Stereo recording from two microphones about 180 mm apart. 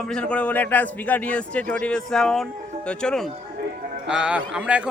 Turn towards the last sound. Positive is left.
turn(degrees=-5)  # may be behind; listen again after turning